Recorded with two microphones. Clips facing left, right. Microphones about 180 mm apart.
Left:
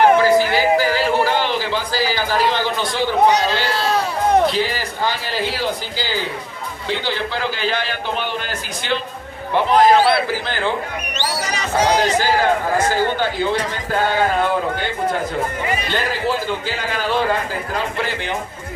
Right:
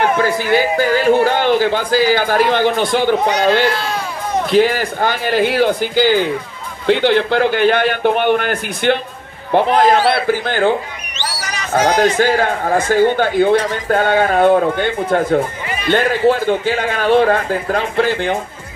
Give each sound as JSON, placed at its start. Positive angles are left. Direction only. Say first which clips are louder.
{"t": 0.2, "sound": "a man's voice", "louder": "even", "side_deg": -55}
{"t": 11.7, "sound": "a man's voice", "louder": "right 4 dB", "side_deg": -50}